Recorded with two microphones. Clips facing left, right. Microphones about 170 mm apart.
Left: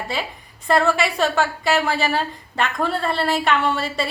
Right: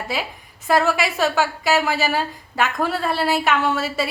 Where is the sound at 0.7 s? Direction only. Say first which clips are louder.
Even; 5° right (ahead or behind).